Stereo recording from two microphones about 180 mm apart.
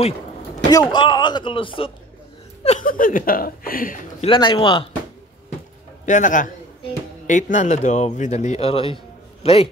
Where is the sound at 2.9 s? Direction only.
50° left (ahead or behind).